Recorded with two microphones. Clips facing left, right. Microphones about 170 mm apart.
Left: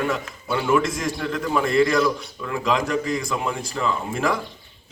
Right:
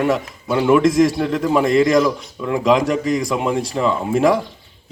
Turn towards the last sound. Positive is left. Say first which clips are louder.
# right 7 dB
turn(degrees=-20)  # may be behind; listen again after turning